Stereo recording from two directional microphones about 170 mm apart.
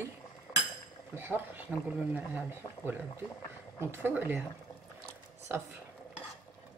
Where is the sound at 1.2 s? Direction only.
10° right (ahead or behind).